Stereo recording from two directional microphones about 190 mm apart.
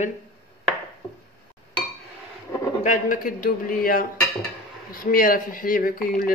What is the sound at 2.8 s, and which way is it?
Speech, 45° left (ahead or behind).